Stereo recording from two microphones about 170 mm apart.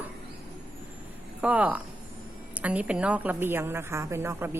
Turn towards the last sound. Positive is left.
turn(degrees=-15)  # may be behind; listen again after turning